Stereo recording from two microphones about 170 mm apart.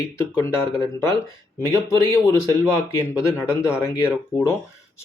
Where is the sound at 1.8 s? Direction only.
15° left (ahead or behind).